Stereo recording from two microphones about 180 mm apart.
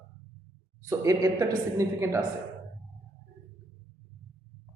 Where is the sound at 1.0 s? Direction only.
20° right (ahead or behind).